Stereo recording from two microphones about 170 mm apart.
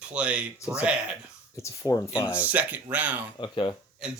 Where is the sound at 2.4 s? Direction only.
10° right (ahead or behind).